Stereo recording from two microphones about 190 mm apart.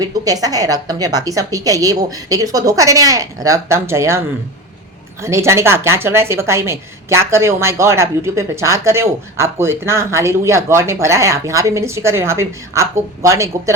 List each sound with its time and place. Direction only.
0.0 s a woman's voice: 20° right (ahead or behind)
5.2 s a woman's voice: 15° right (ahead or behind)